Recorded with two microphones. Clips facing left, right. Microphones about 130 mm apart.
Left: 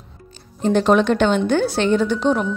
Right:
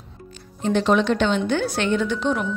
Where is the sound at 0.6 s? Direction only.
40° left (ahead or behind).